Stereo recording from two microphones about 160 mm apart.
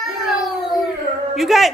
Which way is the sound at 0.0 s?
Centre (ahead or behind).